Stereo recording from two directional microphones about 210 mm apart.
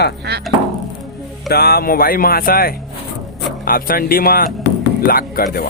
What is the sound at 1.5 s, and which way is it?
Speech, 45° left (ahead or behind).